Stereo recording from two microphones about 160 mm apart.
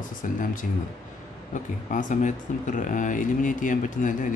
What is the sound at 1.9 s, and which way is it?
Speech, 50° left (ahead or behind).